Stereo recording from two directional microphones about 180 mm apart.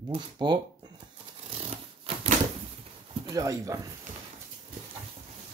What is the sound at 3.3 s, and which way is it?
Speech, 20° right (ahead or behind).